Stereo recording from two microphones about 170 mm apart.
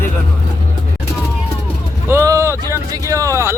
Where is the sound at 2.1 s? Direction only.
15° right (ahead or behind).